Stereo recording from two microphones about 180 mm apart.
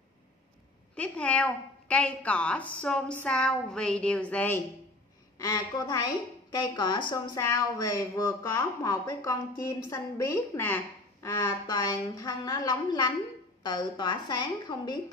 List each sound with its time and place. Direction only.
0.9 s a woman's voice: 5° left (ahead or behind)
5.4 s a woman's voice: 20° left (ahead or behind)